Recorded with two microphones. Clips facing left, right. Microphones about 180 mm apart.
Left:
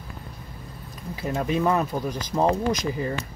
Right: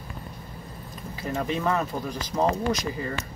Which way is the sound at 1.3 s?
15° left (ahead or behind).